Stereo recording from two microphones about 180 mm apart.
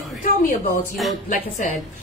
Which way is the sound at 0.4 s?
45° left (ahead or behind).